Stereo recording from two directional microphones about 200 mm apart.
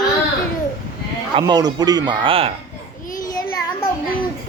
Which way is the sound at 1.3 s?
20° right (ahead or behind).